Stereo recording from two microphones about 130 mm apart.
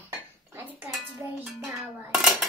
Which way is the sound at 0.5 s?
15° right (ahead or behind).